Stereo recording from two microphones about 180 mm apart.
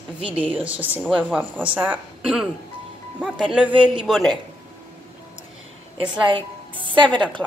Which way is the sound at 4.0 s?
Centre (ahead or behind).